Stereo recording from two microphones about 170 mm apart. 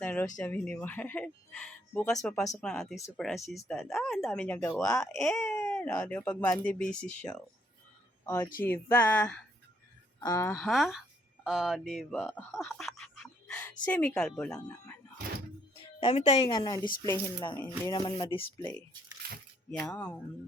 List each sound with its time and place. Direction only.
0.0 s a sound: 10° left (ahead or behind)
0.3 s speech: 10° left (ahead or behind)
8.6 s speech: 10° left (ahead or behind)
10.6 s speech: centre (ahead or behind)
12.7 s a sound: centre (ahead or behind)
14.2 s speech: 5° left (ahead or behind)
15.7 s music: 30° left (ahead or behind)
16.5 s music: 25° left (ahead or behind)
19.8 s speech: 10° left (ahead or behind)